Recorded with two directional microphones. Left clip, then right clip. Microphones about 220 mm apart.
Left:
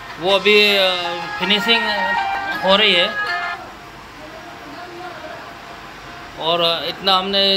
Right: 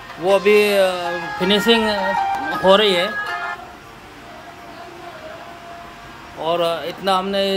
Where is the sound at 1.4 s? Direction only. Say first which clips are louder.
Even; 40° right (ahead or behind).